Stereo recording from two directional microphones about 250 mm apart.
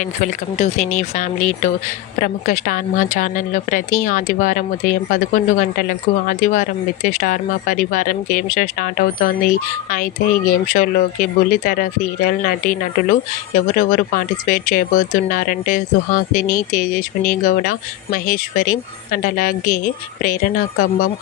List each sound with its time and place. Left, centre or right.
0.0 s speech: left